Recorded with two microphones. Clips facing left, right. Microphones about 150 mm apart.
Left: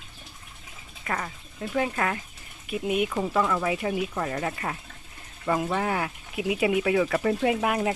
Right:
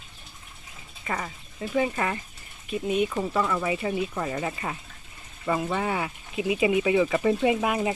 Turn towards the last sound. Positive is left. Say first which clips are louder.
# right 1 dB
turn(degrees=0)  # may be behind; listen again after turning